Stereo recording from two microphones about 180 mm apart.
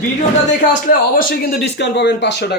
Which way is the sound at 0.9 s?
50° left (ahead or behind).